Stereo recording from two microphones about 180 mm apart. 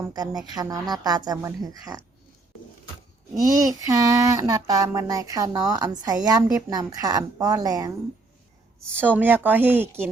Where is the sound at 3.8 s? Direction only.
20° right (ahead or behind).